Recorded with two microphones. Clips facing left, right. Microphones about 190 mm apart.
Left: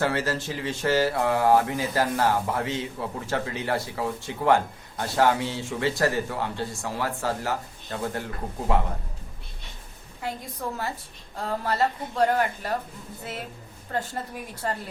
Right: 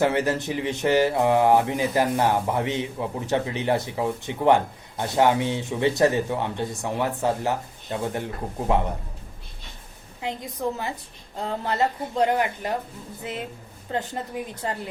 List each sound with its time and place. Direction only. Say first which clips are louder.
0.0 s speech: right 4 dB; 20° right (ahead or behind)
10.2 s speech: right 4 dB; 20° right (ahead or behind)
13.9 s speech: right 2 dB; 20° right (ahead or behind)